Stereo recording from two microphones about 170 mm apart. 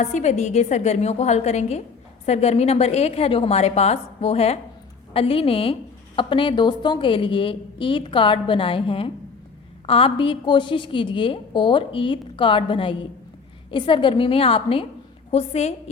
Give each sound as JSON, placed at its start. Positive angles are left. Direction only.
{"t": 0.0, "sound": "a woman's voice", "side_deg": 45}